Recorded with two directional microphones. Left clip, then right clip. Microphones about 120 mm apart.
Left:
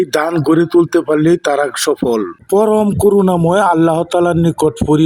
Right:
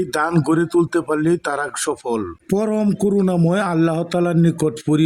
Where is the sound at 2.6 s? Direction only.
40° left (ahead or behind).